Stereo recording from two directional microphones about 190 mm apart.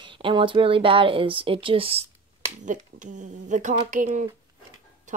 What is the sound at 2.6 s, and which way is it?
Speech, 40° right (ahead or behind).